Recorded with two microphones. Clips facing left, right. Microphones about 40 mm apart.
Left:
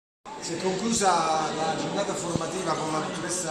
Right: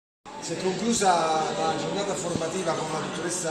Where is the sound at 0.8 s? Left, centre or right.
Centre.